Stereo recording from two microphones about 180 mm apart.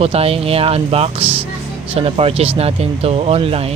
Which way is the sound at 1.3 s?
10° right (ahead or behind).